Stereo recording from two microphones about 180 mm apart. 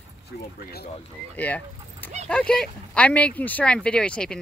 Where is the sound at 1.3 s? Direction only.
10° left (ahead or behind).